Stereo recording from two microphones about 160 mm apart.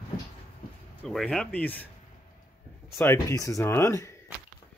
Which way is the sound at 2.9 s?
15° left (ahead or behind).